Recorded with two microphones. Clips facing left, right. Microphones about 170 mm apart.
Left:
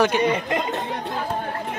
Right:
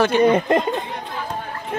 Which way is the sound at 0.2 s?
50° right (ahead or behind).